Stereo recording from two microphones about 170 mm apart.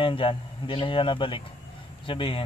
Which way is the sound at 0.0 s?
30° left (ahead or behind).